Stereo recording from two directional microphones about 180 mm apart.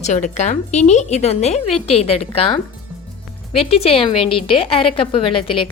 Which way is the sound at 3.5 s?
35° left (ahead or behind).